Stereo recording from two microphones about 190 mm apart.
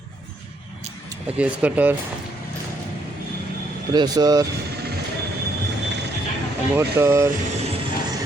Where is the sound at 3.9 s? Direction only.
20° right (ahead or behind).